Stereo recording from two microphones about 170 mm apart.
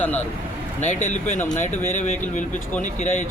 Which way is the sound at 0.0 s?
10° left (ahead or behind).